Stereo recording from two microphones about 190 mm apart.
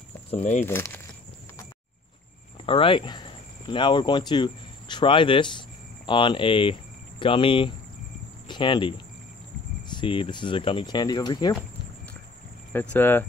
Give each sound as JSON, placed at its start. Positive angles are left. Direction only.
{"t": 0.3, "sound": "speech", "side_deg": 35}
{"t": 0.7, "sound": "speech", "side_deg": 10}
{"t": 2.6, "sound": "speech", "side_deg": 25}
{"t": 12.7, "sound": "speech", "side_deg": 10}